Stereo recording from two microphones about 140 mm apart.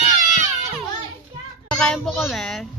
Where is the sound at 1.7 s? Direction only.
5° left (ahead or behind).